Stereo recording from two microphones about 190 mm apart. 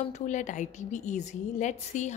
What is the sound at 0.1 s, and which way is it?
A woman's voice, 40° left (ahead or behind).